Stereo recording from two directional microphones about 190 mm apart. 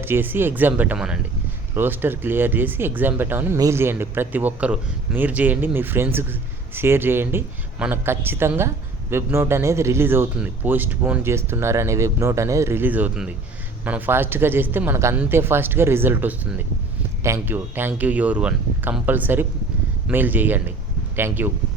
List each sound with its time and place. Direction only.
0.0 s speech: 10° right (ahead or behind)